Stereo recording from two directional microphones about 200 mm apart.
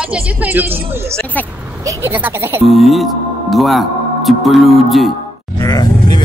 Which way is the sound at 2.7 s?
Centre (ahead or behind).